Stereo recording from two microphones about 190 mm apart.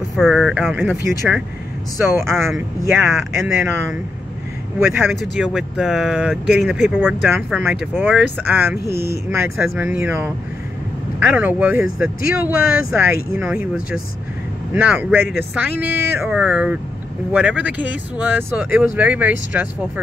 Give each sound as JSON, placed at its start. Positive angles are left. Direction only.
{"t": 0.1, "sound": "speech", "side_deg": 0}
{"t": 8.9, "sound": "speech", "side_deg": 55}
{"t": 9.3, "sound": "speech", "side_deg": -10}
{"t": 11.3, "sound": "speech", "side_deg": -10}